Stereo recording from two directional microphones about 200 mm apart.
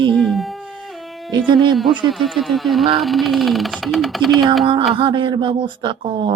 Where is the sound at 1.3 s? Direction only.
25° right (ahead or behind).